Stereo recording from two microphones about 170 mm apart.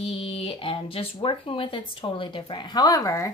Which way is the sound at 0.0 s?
35° left (ahead or behind).